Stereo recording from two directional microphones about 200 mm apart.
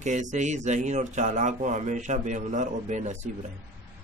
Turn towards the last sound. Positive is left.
turn(degrees=-35)  # may be behind; listen again after turning